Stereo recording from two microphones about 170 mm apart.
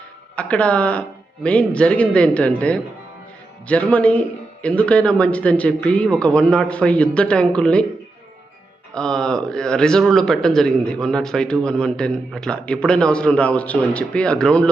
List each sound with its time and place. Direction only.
0.3 s a man's voice: 5° left (ahead or behind)
9.0 s speech: 5° left (ahead or behind)